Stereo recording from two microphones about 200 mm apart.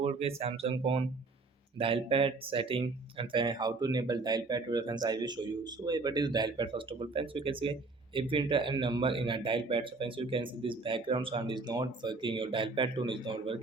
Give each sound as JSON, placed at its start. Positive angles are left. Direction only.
{"t": 0.0, "sound": "speech", "side_deg": -30}